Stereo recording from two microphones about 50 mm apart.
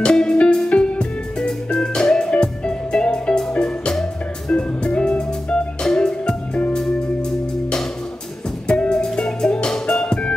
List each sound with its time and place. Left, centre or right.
0.1 s music: centre
8.6 s music: centre